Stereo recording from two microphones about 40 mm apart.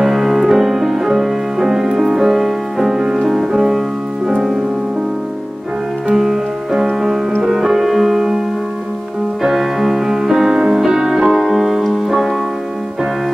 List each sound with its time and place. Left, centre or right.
0.0 s music: centre
3.0 s music: centre
3.3 s music: centre
6.1 s music: centre
9.4 s music: centre